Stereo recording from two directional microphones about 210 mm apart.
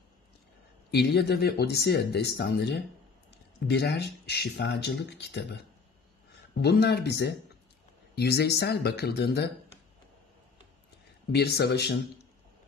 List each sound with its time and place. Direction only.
0.9 s speech: 50° left (ahead or behind)
6.6 s speech: 50° left (ahead or behind)
11.3 s speech: 50° left (ahead or behind)